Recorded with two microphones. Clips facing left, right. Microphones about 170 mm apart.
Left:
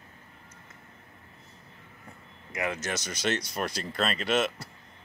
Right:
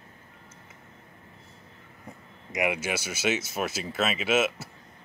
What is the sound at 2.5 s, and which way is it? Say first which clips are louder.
Speech: right 4 dB; 15° right (ahead or behind).